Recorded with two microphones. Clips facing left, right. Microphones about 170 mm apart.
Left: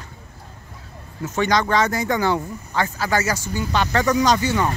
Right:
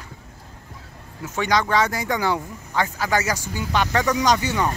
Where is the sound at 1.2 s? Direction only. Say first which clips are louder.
Left 2 dB; 10° right (ahead or behind).